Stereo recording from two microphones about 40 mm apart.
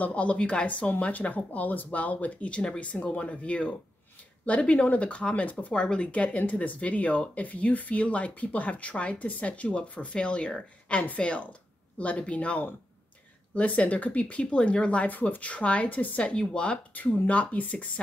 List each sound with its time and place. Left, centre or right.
0.0 s speech: left
5.7 s speech: left
14.4 s speech: left
15.0 s speech: left
16.9 s speech: left